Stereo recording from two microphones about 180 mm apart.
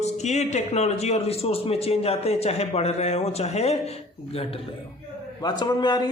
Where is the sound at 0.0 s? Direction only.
40° left (ahead or behind).